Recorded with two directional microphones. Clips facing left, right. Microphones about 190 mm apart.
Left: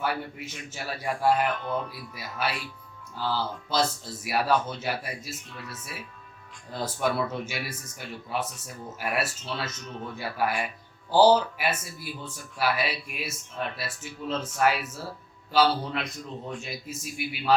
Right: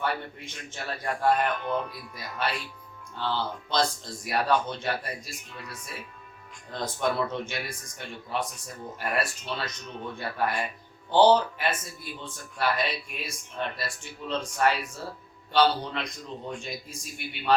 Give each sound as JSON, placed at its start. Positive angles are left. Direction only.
{"t": 0.0, "sound": "a man's voice", "side_deg": 5}